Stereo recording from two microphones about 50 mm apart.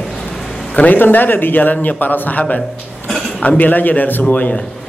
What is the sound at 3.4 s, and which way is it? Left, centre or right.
Speech, left.